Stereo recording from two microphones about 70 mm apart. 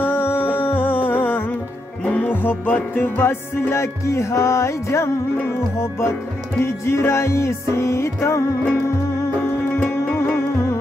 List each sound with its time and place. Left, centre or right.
0.0 s music: left
9.8 s music: left